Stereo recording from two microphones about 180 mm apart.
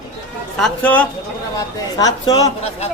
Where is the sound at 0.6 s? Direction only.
10° left (ahead or behind).